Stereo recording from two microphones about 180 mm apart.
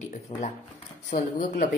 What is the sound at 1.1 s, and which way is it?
Speech, 45° left (ahead or behind).